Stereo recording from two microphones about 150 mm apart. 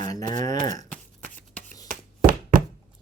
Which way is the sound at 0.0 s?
25° left (ahead or behind).